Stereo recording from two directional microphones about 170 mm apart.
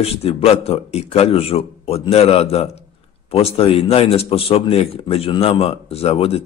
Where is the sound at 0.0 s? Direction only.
35° left (ahead or behind).